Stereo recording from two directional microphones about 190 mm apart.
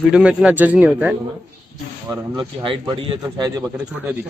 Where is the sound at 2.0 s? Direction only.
25° right (ahead or behind).